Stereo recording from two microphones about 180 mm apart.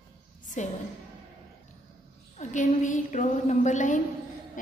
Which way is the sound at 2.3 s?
45° left (ahead or behind).